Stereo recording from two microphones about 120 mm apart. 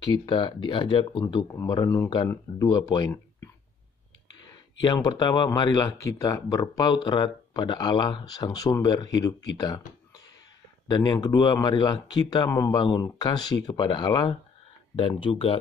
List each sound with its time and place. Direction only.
0.1 s speech: 40° left (ahead or behind)
1.2 s speech: 30° left (ahead or behind)
4.5 s speech: 35° left (ahead or behind)
12.7 s speech: 35° left (ahead or behind)